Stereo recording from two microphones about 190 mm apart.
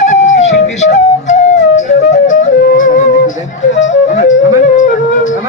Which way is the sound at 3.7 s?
75° left (ahead or behind).